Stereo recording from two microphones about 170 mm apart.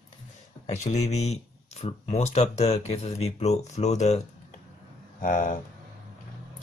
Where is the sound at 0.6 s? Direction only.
45° left (ahead or behind).